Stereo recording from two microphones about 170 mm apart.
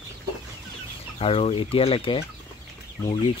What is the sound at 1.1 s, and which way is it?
Speech, 35° left (ahead or behind).